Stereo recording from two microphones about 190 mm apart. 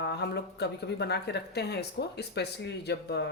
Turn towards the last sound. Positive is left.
turn(degrees=60)  # may be behind; listen again after turning